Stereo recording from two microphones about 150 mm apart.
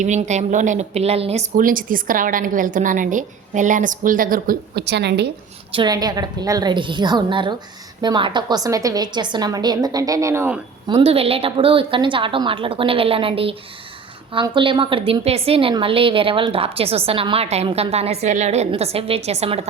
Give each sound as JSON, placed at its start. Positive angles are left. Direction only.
{"t": 0.0, "sound": "a woman's voice", "side_deg": -50}
{"t": 1.5, "sound": "a woman's voice", "side_deg": -65}
{"t": 5.7, "sound": "a woman's voice", "side_deg": -30}
{"t": 10.8, "sound": "a woman's voice", "side_deg": -40}